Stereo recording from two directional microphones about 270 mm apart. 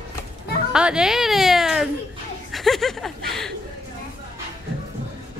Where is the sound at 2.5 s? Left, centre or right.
Centre.